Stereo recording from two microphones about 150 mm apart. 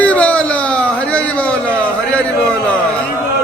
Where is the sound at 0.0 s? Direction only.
10° left (ahead or behind).